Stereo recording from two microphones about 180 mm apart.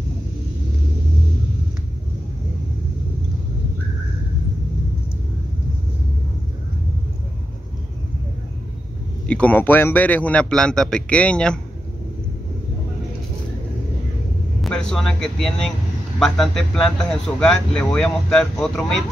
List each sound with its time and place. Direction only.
9.3 s a man's voice: 10° left (ahead or behind)
14.6 s speech: 5° left (ahead or behind)